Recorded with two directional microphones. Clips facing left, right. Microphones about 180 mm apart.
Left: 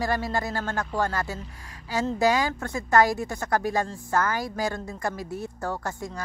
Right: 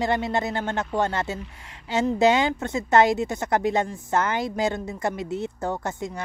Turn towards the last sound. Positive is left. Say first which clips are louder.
# right 3 dB
turn(degrees=-20)  # may be behind; listen again after turning